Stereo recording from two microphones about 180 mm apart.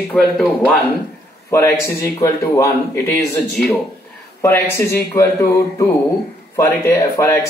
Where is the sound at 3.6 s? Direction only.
5° left (ahead or behind).